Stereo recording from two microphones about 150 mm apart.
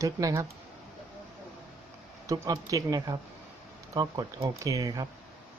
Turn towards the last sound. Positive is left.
turn(degrees=-25)  # may be behind; listen again after turning